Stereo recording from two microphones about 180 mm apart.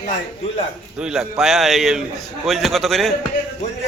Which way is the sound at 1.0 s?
5° right (ahead or behind).